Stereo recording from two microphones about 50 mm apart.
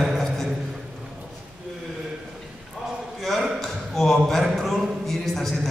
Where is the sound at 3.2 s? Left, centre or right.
Centre.